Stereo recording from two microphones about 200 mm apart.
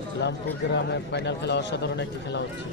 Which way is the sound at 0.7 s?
60° left (ahead or behind).